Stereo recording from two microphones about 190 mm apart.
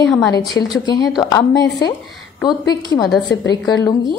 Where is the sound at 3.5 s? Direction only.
20° left (ahead or behind).